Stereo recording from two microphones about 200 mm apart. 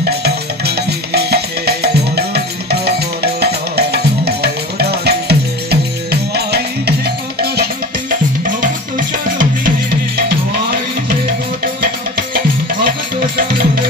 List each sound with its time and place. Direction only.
0.2 s music: 55° right (ahead or behind)
8.1 s music: 45° right (ahead or behind)